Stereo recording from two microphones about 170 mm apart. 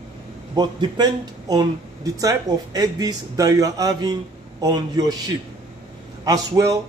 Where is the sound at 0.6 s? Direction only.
25° right (ahead or behind).